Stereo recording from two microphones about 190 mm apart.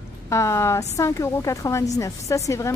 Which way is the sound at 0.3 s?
15° left (ahead or behind).